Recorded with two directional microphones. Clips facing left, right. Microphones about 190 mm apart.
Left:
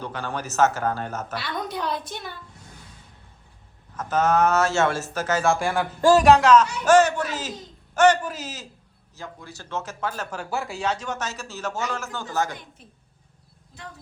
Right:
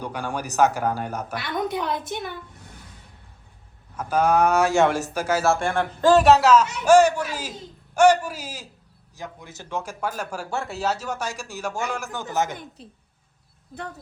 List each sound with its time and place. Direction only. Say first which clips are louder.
0.0 s a woman's voice: right 2 dB; 10° right (ahead or behind)
3.9 s speech: right 1 dB; 10° right (ahead or behind); by 6.2 s 5° left (ahead or behind)
6.2 s speech: even; 5° right (ahead or behind)
12.8 s speech: right 6 dB; 30° right (ahead or behind)